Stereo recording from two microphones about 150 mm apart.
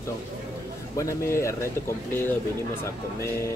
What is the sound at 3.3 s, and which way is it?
Music, 20° left (ahead or behind).